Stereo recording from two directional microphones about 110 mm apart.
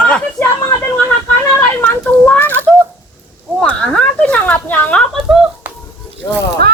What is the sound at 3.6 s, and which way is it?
Speech, 5° left (ahead or behind).